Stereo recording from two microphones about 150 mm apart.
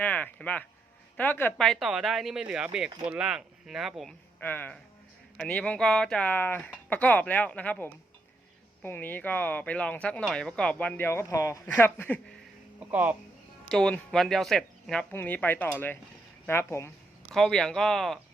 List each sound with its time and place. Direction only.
0.0 s speech: 10° left (ahead or behind)
4.4 s speech: 15° left (ahead or behind)
12.9 s speech: 10° right (ahead or behind)
13.7 s speech: 5° left (ahead or behind)
17.2 s speech: centre (ahead or behind)